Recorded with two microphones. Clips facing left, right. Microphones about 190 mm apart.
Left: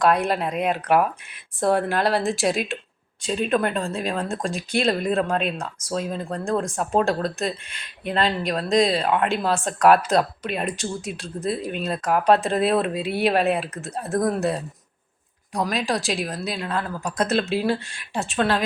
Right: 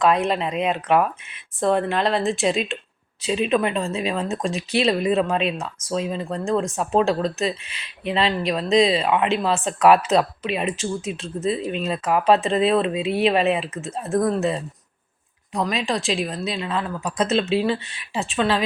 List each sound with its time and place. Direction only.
0.0 s speech: centre (ahead or behind)
15.5 s speech: centre (ahead or behind)